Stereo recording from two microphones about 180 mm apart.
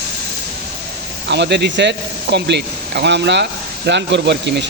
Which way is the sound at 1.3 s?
70° right (ahead or behind).